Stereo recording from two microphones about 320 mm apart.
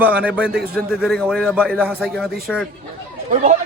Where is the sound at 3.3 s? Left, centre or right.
Right.